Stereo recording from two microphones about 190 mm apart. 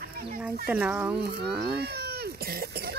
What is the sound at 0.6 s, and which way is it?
Speech, 10° right (ahead or behind).